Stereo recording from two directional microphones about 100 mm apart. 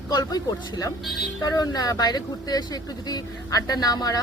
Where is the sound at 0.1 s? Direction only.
45° left (ahead or behind).